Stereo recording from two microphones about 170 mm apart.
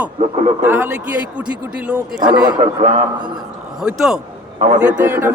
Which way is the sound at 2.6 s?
45° right (ahead or behind).